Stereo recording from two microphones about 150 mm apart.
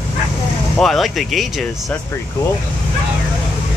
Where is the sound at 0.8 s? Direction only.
Centre (ahead or behind).